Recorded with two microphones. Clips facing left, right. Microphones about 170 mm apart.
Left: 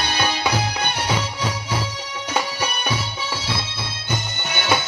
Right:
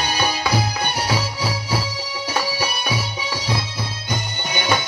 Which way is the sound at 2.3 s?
10° right (ahead or behind).